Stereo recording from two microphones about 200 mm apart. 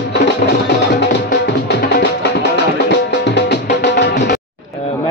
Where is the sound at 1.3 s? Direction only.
60° left (ahead or behind).